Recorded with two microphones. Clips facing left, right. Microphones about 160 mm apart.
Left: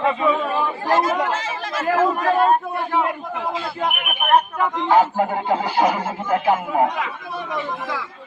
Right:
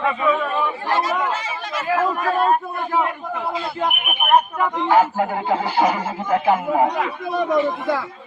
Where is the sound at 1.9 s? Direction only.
45° left (ahead or behind).